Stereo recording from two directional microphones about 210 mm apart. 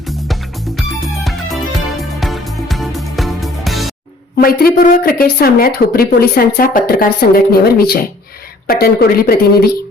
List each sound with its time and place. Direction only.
0.8 s music: centre (ahead or behind)
4.4 s a woman's voice: 45° left (ahead or behind)